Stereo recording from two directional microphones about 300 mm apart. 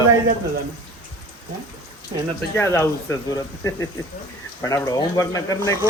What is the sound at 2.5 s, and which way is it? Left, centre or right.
A man's voice, centre.